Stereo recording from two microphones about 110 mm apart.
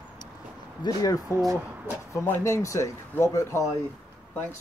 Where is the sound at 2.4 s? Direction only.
25° left (ahead or behind).